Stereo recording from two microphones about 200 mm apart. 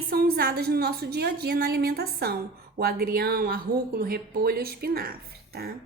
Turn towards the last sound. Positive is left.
turn(degrees=-50)  # may be behind; listen again after turning